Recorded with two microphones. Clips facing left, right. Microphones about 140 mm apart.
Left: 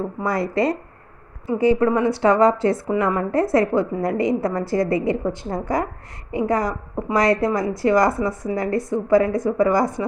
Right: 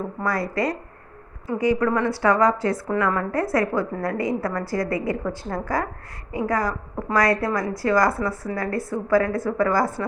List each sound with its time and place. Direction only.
0.2 s a woman's voice: 25° left (ahead or behind)